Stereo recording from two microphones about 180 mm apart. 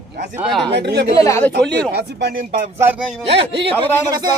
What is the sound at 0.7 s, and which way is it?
Speech, 70° right (ahead or behind).